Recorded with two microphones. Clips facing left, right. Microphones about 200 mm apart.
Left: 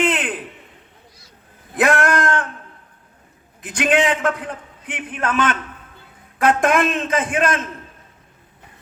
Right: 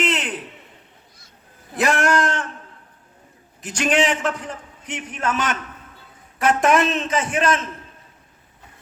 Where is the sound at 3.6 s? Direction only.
55° left (ahead or behind).